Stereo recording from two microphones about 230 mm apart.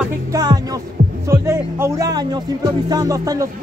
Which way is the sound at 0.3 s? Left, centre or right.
Centre.